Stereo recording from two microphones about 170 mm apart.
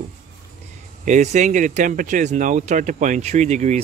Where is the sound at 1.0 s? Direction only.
45° right (ahead or behind).